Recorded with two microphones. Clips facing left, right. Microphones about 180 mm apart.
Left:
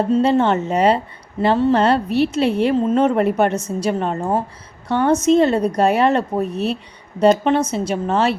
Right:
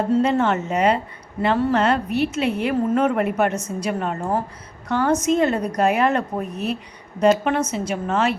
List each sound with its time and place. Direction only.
0.1 s a woman's voice: 30° left (ahead or behind)